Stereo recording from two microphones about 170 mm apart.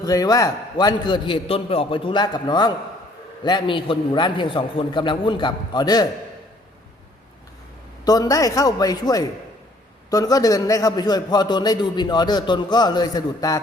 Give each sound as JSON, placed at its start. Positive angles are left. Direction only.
{"t": 0.0, "sound": "a man's voice", "side_deg": 20}
{"t": 8.0, "sound": "a man's voice", "side_deg": 20}